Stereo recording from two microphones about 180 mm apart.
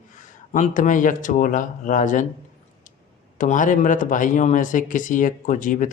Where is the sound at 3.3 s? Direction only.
45° left (ahead or behind).